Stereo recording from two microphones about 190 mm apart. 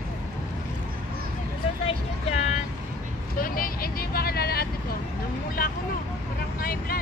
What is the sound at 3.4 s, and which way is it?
Vehicle, 50° left (ahead or behind).